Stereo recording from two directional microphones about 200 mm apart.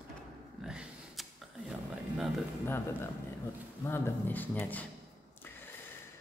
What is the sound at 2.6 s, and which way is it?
A woman's voice, 10° left (ahead or behind).